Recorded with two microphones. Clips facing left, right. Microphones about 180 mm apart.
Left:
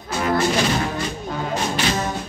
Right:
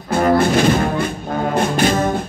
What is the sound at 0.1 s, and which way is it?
Music, 55° right (ahead or behind).